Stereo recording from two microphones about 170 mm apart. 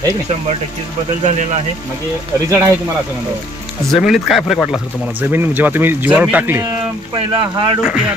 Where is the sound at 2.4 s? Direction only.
20° right (ahead or behind).